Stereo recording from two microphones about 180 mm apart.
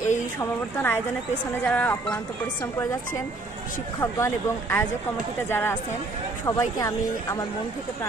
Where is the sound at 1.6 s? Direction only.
10° left (ahead or behind).